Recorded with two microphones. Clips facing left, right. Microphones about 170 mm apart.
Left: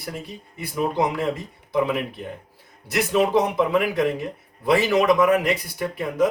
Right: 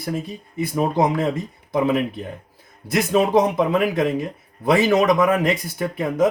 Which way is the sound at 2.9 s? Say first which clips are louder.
Right 2 dB; 50° right (ahead or behind).